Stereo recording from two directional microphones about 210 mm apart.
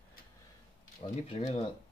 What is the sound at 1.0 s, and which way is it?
Speech, 30° left (ahead or behind).